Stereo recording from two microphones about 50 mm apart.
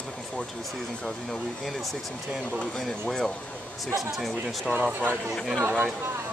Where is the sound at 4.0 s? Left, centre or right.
Centre.